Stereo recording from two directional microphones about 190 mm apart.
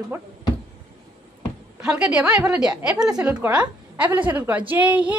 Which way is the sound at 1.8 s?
5° right (ahead or behind).